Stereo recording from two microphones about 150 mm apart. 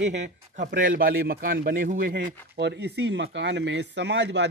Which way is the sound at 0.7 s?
65° right (ahead or behind).